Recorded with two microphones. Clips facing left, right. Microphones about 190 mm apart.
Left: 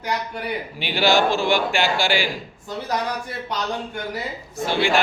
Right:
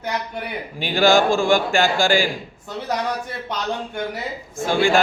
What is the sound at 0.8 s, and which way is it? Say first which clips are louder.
Speech: right 3 dB; 45° right (ahead or behind).